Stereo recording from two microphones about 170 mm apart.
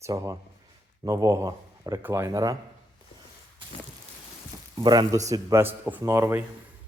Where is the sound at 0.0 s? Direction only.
15° right (ahead or behind).